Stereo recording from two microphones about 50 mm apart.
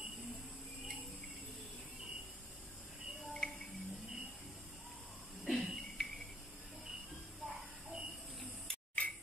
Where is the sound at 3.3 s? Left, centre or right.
Centre.